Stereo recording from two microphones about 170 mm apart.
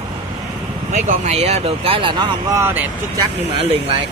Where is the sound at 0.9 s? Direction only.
40° right (ahead or behind).